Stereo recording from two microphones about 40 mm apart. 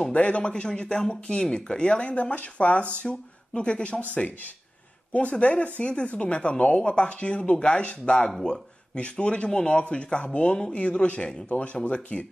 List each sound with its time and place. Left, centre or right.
0.1 s speech: left
5.1 s speech: left
11.4 s speech: left